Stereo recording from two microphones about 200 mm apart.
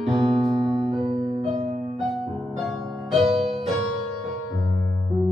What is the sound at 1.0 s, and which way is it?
Music, 30° right (ahead or behind).